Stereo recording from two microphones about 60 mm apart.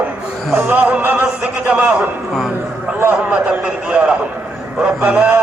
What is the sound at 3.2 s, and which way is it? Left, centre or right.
A man's voice, centre.